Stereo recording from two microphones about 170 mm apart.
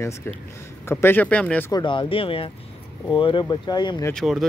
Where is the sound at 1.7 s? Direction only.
25° left (ahead or behind).